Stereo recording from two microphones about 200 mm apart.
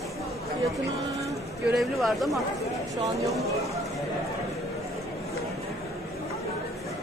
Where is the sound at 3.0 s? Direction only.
15° right (ahead or behind).